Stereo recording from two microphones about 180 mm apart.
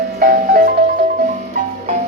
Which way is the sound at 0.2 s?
50° right (ahead or behind).